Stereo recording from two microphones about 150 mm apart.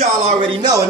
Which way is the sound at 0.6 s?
25° right (ahead or behind).